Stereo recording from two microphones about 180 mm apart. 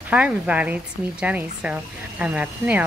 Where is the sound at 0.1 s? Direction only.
10° right (ahead or behind).